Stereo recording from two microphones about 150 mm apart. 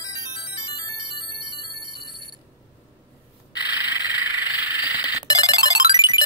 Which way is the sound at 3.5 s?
30° left (ahead or behind).